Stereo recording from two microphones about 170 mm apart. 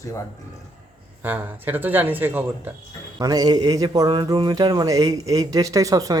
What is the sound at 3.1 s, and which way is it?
Speech, 20° right (ahead or behind).